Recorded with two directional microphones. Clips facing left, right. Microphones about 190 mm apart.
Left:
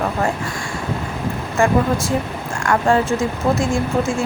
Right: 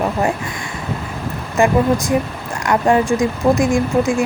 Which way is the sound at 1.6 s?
20° right (ahead or behind).